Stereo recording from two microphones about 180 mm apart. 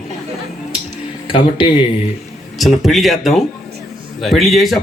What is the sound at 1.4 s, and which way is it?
Speech, 25° left (ahead or behind).